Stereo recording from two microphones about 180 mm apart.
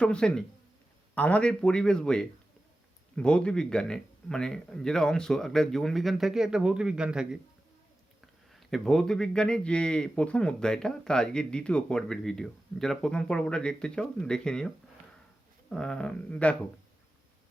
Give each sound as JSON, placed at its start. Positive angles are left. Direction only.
{"t": 0.0, "sound": "a man's voice", "side_deg": 5}
{"t": 8.5, "sound": "a man's voice", "side_deg": 0}
{"t": 15.7, "sound": "a man's voice", "side_deg": 5}